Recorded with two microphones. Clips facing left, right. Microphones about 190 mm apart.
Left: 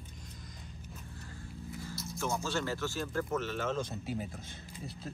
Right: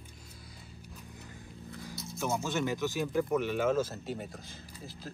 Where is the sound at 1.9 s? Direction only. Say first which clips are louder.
Left 1 dB; centre (ahead or behind).